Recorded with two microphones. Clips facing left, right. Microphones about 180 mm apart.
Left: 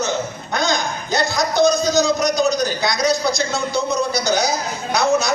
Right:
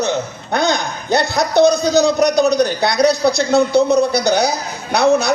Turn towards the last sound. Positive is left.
turn(degrees=-60)  # may be behind; listen again after turning